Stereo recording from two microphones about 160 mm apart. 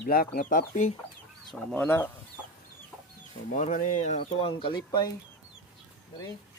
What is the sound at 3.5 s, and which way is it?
Speech, 50° left (ahead or behind).